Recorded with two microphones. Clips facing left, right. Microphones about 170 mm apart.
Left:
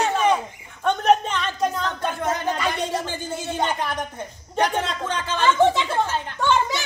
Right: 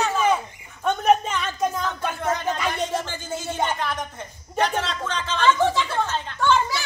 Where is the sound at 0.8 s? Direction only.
5° right (ahead or behind).